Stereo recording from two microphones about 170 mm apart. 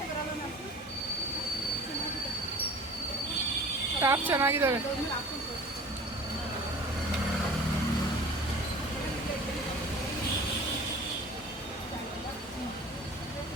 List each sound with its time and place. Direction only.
4.0 s speech: 15° right (ahead or behind)